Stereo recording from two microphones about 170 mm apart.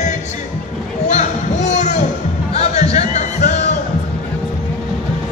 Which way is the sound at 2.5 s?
40° left (ahead or behind).